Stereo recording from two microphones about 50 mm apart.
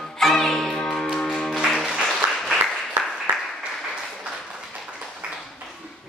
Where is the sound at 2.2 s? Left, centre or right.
Right.